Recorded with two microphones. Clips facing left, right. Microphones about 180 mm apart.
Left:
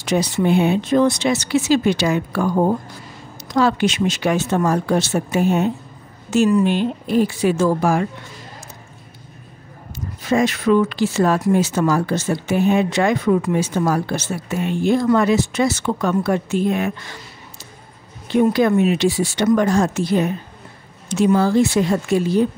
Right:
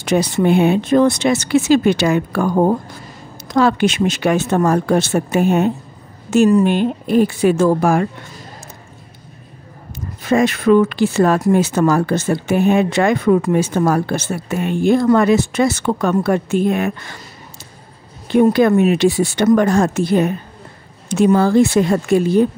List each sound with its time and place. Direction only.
0.0 s speech: 55° right (ahead or behind)
9.9 s speech: 55° right (ahead or behind)
18.3 s speech: 55° right (ahead or behind)